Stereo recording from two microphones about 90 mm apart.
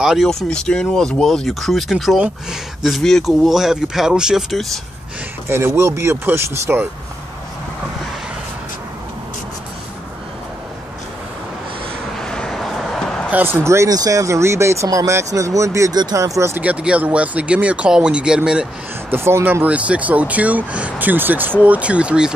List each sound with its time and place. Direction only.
0.0 s speech: centre (ahead or behind)
5.5 s speech: 25° right (ahead or behind)
12.2 s vehicle: 5° left (ahead or behind)
13.3 s speech: 20° right (ahead or behind)
13.7 s speech: 30° right (ahead or behind)
15.9 s speech: 45° right (ahead or behind)
16.5 s speech: 15° right (ahead or behind)
19.0 s speech: 25° right (ahead or behind); by 22.3 s 10° right (ahead or behind)